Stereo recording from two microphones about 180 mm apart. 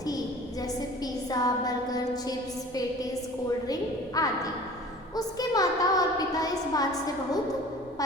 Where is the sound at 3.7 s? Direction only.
20° left (ahead or behind).